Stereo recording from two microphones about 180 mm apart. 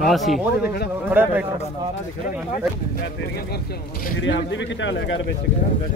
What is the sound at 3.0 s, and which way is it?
Speech, 60° left (ahead or behind).